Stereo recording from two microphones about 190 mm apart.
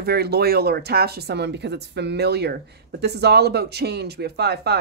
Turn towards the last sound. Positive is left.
turn(degrees=-60)  # may be behind; listen again after turning